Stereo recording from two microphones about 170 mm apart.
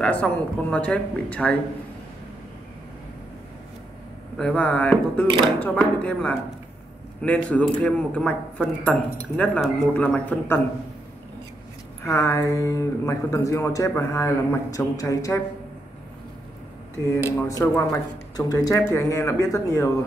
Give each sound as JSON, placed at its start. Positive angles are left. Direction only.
{"t": 0.0, "sound": "speech", "side_deg": 10}
{"t": 4.4, "sound": "speech", "side_deg": 5}
{"t": 12.0, "sound": "speech", "side_deg": 15}
{"t": 17.1, "sound": "speech", "side_deg": 20}